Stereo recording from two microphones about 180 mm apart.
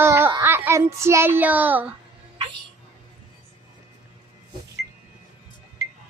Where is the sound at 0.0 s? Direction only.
15° right (ahead or behind).